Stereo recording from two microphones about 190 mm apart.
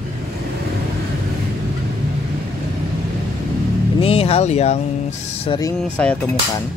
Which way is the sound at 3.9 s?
30° left (ahead or behind).